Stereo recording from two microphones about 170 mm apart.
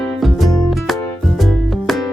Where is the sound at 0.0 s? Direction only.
Centre (ahead or behind).